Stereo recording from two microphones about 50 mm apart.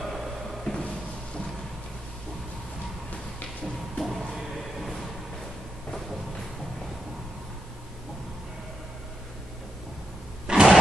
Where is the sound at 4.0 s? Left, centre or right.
Centre.